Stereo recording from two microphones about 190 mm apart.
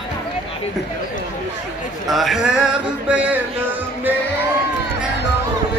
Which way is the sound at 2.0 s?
Centre (ahead or behind).